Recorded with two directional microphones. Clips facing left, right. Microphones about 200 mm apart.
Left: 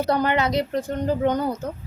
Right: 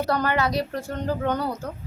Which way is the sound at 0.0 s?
20° left (ahead or behind).